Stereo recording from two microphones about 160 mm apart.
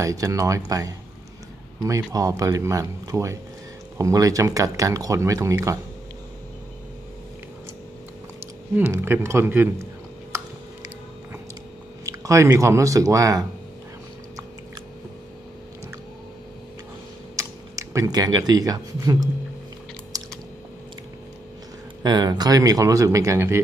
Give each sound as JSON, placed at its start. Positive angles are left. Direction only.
{"t": 0.0, "sound": "speech", "side_deg": -20}
{"t": 8.7, "sound": "speech", "side_deg": -15}
{"t": 10.3, "sound": "a sound", "side_deg": -15}
{"t": 12.1, "sound": "speech", "side_deg": -20}
{"t": 17.4, "sound": "speech", "side_deg": -20}
{"t": 20.1, "sound": "typing", "side_deg": -20}
{"t": 22.0, "sound": "speech", "side_deg": -25}